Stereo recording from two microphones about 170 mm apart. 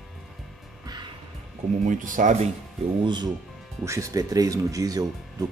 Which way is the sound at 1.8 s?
50° right (ahead or behind).